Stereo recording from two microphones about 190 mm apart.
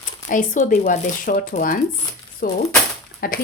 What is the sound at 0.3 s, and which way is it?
Speech, 45° left (ahead or behind).